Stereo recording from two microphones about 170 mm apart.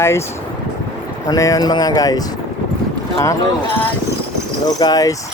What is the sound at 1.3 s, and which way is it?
Speech, 20° left (ahead or behind).